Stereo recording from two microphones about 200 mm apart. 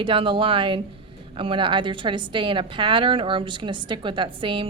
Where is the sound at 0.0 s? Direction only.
25° right (ahead or behind).